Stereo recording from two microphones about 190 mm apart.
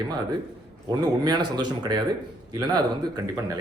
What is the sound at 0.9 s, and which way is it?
A man's voice, 20° right (ahead or behind).